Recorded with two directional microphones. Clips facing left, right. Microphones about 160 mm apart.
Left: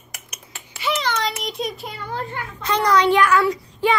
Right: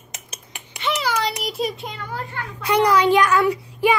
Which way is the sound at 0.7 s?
5° left (ahead or behind).